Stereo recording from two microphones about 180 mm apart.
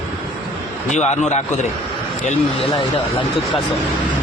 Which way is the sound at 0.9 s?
40° left (ahead or behind).